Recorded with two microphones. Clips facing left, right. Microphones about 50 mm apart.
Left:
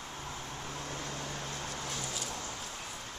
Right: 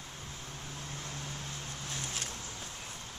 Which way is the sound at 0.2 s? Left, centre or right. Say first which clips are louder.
Left 5 dB; left.